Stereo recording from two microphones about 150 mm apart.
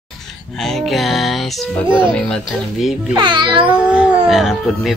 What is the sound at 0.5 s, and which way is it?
Speech, centre (ahead or behind).